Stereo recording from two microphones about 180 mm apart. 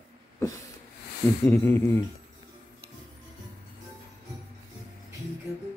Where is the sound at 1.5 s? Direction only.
10° left (ahead or behind).